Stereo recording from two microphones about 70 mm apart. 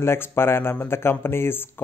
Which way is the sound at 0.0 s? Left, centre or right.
Left.